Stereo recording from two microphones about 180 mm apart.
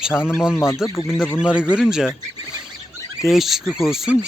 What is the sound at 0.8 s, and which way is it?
Speech, 15° left (ahead or behind).